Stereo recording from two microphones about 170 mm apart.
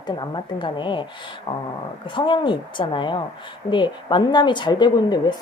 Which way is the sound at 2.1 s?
30° left (ahead or behind).